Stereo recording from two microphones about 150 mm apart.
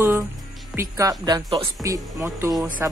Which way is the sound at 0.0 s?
15° right (ahead or behind).